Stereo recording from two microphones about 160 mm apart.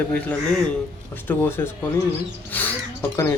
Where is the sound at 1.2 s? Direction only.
15° left (ahead or behind).